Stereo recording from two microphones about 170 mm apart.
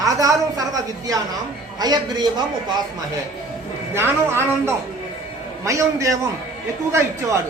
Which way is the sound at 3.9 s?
15° right (ahead or behind).